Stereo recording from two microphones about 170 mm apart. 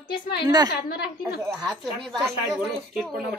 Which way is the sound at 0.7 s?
65° left (ahead or behind).